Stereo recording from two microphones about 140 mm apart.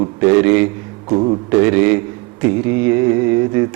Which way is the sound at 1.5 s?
15° right (ahead or behind).